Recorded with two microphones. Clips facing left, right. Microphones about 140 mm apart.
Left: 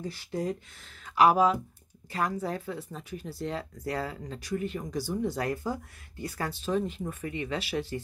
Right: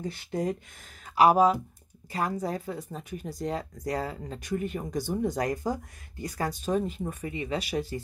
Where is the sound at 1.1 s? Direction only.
40° right (ahead or behind).